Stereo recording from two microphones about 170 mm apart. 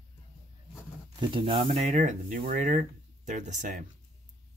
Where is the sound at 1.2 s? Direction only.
30° right (ahead or behind).